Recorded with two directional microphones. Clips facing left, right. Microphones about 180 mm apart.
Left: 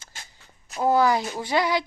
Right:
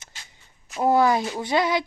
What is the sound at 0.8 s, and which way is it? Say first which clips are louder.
Speech: right 1 dB; 25° right (ahead or behind).